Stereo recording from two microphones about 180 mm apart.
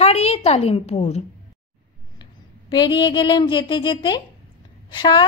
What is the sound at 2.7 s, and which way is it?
A woman's voice, 25° left (ahead or behind).